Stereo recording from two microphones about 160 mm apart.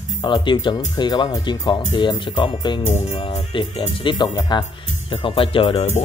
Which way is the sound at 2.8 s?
45° left (ahead or behind).